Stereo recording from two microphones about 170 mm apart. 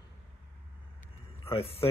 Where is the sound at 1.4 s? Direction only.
35° left (ahead or behind).